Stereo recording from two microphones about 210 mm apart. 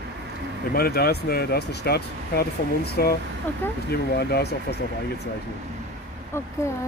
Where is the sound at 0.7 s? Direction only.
45° left (ahead or behind).